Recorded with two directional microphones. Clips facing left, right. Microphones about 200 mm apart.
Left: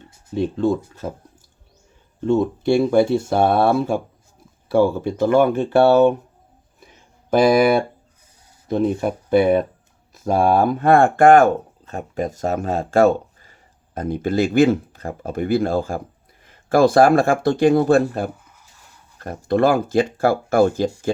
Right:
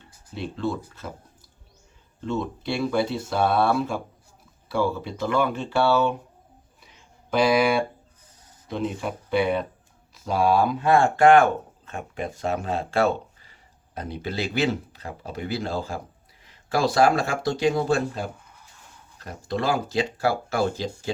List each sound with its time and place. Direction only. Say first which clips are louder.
0.3 s speech: left 9 dB; 45° left (ahead or behind)
2.2 s speech: left 10 dB; 50° left (ahead or behind)
7.3 s speech: left 6 dB; 50° left (ahead or behind)